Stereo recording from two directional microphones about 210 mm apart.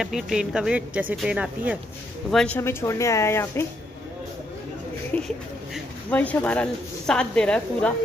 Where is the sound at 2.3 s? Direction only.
5° left (ahead or behind).